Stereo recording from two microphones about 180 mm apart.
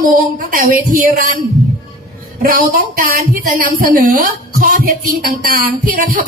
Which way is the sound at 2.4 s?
50° right (ahead or behind).